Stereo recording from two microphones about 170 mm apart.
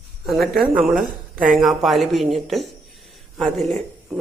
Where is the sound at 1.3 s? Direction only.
50° right (ahead or behind).